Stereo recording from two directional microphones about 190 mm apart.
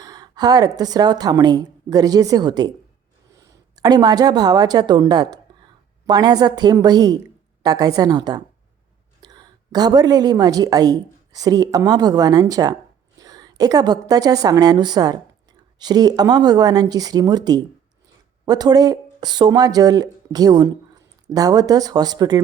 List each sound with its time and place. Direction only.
0.0 s speech: 20° right (ahead or behind)
3.8 s a woman's voice: 20° right (ahead or behind)